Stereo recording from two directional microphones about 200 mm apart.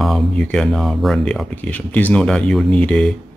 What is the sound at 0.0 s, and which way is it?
Speech, 5° left (ahead or behind).